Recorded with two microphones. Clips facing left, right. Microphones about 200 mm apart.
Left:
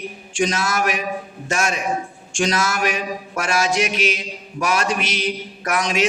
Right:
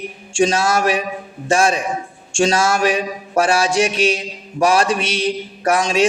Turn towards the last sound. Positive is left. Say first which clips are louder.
# right 5 dB
turn(degrees=-30)  # may be behind; listen again after turning